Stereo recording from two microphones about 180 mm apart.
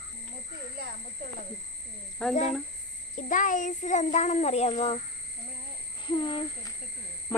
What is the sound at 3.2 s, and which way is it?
A child's voice, 45° left (ahead or behind).